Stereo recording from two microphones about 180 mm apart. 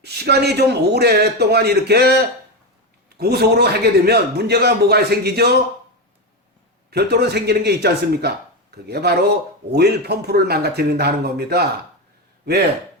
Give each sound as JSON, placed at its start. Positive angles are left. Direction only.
{"t": 0.0, "sound": "a man's voice", "side_deg": -65}
{"t": 3.2, "sound": "a man's voice", "side_deg": -60}
{"t": 6.9, "sound": "a man's voice", "side_deg": -65}